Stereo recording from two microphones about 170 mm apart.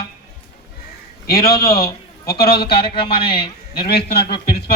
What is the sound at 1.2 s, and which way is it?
A man's voice, 60° left (ahead or behind).